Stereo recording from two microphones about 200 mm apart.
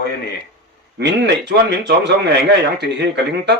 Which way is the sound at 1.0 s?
60° right (ahead or behind).